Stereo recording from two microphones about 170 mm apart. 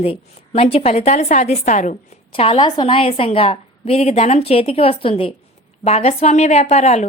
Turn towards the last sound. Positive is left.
turn(degrees=40)  # may be behind; listen again after turning